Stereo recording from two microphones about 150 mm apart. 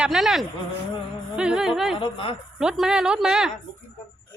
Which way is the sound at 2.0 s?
35° left (ahead or behind).